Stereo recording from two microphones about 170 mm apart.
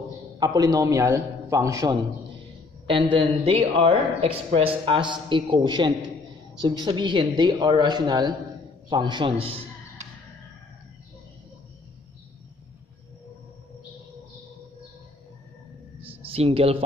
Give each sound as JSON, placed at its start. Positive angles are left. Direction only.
{"t": 0.4, "sound": "speech", "side_deg": -25}
{"t": 2.9, "sound": "a man's voice", "side_deg": -30}
{"t": 16.1, "sound": "speech", "side_deg": -35}